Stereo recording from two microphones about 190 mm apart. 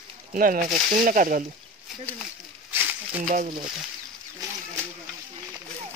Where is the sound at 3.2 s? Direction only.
45° right (ahead or behind).